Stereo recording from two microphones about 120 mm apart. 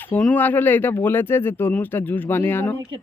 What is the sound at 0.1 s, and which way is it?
Speech, 10° left (ahead or behind).